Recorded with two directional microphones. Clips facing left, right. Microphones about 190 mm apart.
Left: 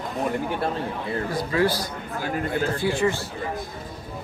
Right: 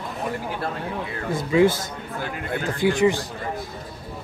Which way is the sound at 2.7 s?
15° right (ahead or behind).